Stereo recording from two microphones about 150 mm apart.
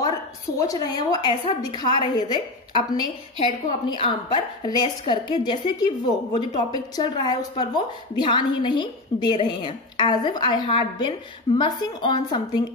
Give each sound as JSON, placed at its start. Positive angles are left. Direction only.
{"t": 0.6, "sound": "a woman's voice", "side_deg": 25}